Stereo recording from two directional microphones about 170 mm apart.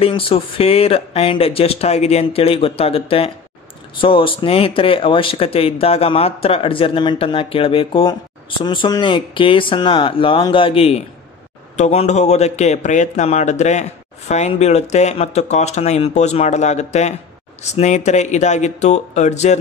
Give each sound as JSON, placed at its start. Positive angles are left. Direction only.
{"t": 0.0, "sound": "speech", "side_deg": 30}